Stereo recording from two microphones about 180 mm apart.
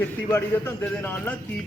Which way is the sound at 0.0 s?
10° left (ahead or behind).